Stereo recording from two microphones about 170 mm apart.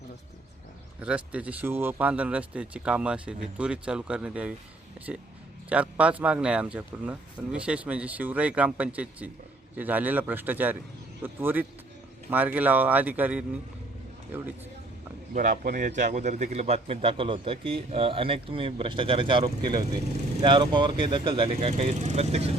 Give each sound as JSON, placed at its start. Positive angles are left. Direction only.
{"t": 1.0, "sound": "speech", "side_deg": -10}
{"t": 15.3, "sound": "speech", "side_deg": -50}
{"t": 21.7, "sound": "speech", "side_deg": -40}